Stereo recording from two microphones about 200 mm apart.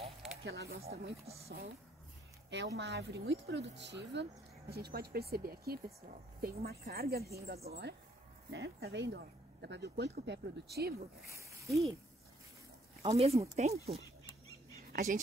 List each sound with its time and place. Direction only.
0.4 s speech: 55° right (ahead or behind)
2.5 s a woman's voice: 60° right (ahead or behind)
11.3 s a sound: 15° right (ahead or behind)
13.0 s speech: 30° right (ahead or behind)
14.9 s speech: 45° right (ahead or behind)